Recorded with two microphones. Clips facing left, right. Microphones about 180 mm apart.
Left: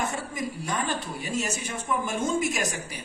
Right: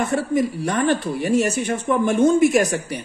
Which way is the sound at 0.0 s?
65° right (ahead or behind).